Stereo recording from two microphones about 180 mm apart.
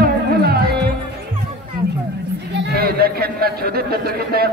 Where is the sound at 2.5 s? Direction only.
60° right (ahead or behind).